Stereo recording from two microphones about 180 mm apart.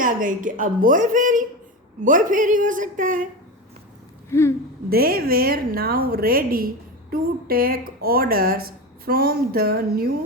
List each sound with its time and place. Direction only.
0.0 s a woman's voice: 50° right (ahead or behind)
4.3 s speech: 15° left (ahead or behind)
4.9 s speech: 55° right (ahead or behind)